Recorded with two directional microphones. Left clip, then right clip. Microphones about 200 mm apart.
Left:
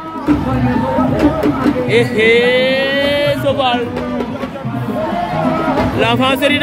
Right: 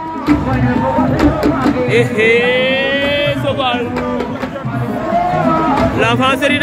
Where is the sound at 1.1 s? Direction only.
Centre (ahead or behind).